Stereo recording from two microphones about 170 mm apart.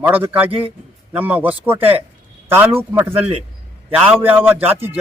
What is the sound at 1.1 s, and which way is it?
A man's voice, 10° right (ahead or behind).